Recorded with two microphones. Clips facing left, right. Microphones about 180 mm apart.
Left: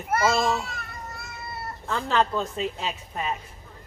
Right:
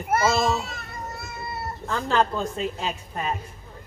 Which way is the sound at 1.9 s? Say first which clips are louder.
Right 1 dB; centre (ahead or behind).